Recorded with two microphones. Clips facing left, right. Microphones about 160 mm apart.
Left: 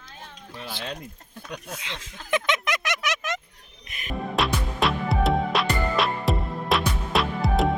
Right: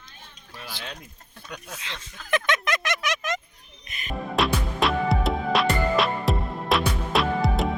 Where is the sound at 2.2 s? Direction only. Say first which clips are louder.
Even; 20° left (ahead or behind).